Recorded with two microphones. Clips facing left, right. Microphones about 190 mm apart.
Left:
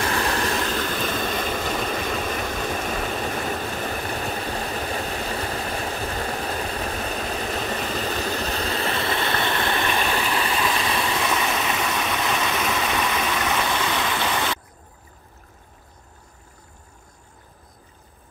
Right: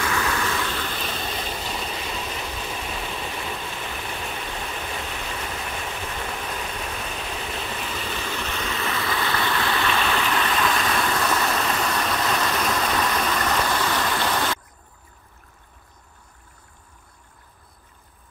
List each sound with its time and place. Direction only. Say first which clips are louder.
0.0 s train: left 2 dB; 35° left (ahead or behind); by 10.1 s 15° left (ahead or behind)
10.2 s stream: even; 10° left (ahead or behind)
11.0 s vehicle: even; 10° left (ahead or behind)